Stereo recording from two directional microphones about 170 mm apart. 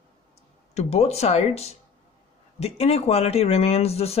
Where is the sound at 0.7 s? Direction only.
40° left (ahead or behind).